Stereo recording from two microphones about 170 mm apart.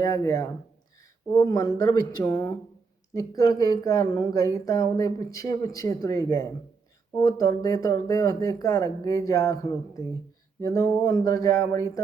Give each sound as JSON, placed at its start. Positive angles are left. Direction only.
{"t": 0.0, "sound": "speech", "side_deg": 20}